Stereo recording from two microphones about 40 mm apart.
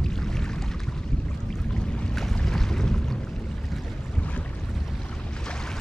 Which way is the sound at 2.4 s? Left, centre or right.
Centre.